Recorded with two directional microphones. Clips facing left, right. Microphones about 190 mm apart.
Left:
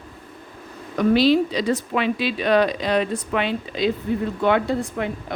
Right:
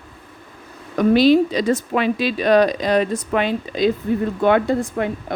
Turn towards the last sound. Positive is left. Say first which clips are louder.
# right 4 dB
turn(degrees=-50)  # may be behind; listen again after turning